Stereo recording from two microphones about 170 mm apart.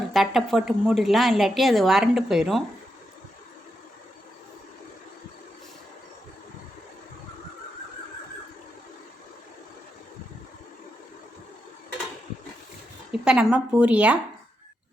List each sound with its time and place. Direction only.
0.1 s a woman's voice: centre (ahead or behind)
13.2 s a woman's voice: 5° right (ahead or behind)